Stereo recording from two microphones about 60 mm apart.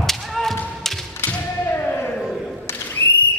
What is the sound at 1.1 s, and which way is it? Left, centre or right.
Thump, left.